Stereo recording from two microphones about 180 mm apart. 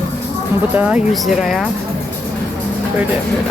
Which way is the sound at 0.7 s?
5° right (ahead or behind).